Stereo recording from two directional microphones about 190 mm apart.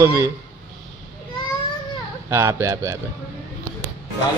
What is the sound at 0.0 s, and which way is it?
Speech, 15° right (ahead or behind).